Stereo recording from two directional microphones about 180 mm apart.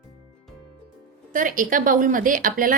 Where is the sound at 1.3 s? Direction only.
50° right (ahead or behind).